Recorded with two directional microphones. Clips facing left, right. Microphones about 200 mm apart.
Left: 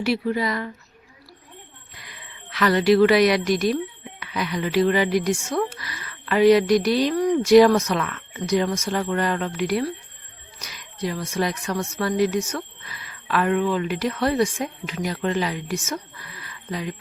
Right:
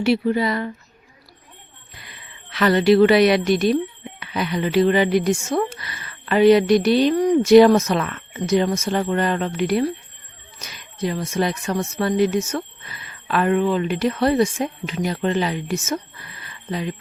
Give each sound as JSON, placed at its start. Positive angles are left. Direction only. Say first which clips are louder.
{"t": 0.0, "sound": "speech", "louder": "right 4 dB", "side_deg": -25}
{"t": 2.0, "sound": "a woman's voice", "louder": "left 3 dB", "side_deg": -25}